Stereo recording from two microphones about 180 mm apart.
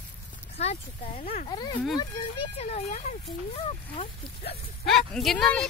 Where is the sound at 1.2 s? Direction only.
55° left (ahead or behind).